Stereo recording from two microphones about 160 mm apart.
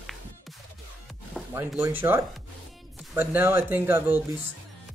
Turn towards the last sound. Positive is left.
turn(degrees=-15)  # may be behind; listen again after turning